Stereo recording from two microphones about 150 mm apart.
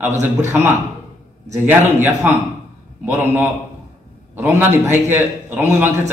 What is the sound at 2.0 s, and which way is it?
A man's voice, 15° right (ahead or behind).